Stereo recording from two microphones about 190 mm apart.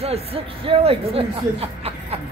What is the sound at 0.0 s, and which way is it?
A man's voice, 30° right (ahead or behind).